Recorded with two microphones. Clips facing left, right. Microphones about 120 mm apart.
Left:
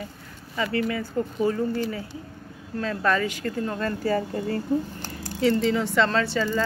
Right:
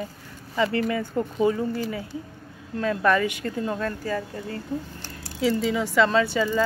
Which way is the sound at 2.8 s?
15° right (ahead or behind).